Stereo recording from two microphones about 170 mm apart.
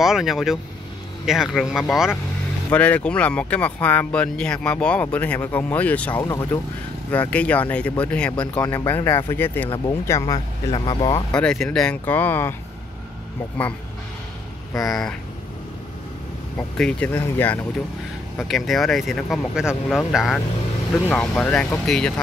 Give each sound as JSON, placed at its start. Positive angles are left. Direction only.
{"t": 0.0, "sound": "speech", "side_deg": 0}
{"t": 11.3, "sound": "speech", "side_deg": 5}
{"t": 14.9, "sound": "speech", "side_deg": 0}
{"t": 16.5, "sound": "speech", "side_deg": 5}